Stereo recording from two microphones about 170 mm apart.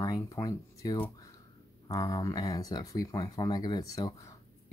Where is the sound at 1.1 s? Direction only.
20° left (ahead or behind).